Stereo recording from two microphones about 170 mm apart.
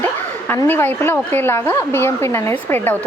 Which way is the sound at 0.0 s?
10° left (ahead or behind).